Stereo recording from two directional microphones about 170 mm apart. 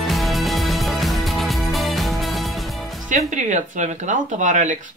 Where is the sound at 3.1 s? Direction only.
45° right (ahead or behind).